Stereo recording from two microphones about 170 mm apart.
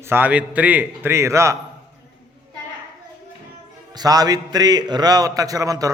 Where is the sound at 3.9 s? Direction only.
20° right (ahead or behind).